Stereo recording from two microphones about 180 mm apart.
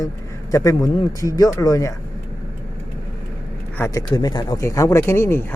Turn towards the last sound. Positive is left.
turn(degrees=15)  # may be behind; listen again after turning